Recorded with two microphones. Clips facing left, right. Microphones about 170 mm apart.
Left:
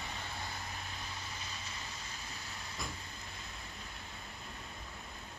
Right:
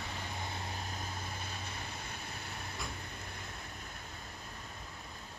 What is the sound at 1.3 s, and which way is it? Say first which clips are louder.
Vehicle: right 3 dB; 55° right (ahead or behind).